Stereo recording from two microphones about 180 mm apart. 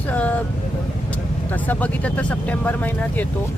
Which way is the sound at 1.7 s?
10° left (ahead or behind).